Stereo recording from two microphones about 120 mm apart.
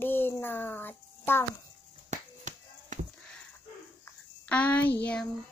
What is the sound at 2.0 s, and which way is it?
Music, 90° right.